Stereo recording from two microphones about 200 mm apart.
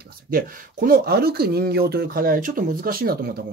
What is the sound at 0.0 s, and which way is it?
Speech, 45° right (ahead or behind).